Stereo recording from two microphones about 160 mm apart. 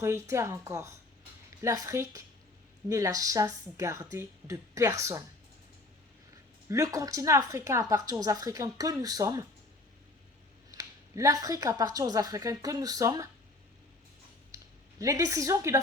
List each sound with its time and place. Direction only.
0.0 s a woman's voice: 15° right (ahead or behind)
6.7 s a woman's voice: 20° right (ahead or behind)
10.7 s a woman's voice: 20° right (ahead or behind)
14.5 s a woman's voice: 20° right (ahead or behind)